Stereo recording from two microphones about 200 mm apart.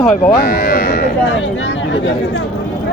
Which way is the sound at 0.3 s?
50° left (ahead or behind).